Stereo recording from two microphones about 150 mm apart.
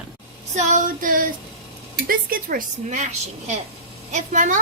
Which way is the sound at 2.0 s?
75° right (ahead or behind).